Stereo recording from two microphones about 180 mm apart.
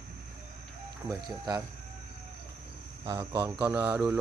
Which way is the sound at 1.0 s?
25° right (ahead or behind).